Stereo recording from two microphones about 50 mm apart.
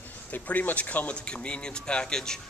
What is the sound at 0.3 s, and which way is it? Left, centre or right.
A man's voice, left.